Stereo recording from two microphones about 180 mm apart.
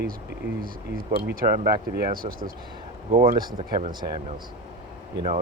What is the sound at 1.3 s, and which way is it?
Speech, 55° right (ahead or behind).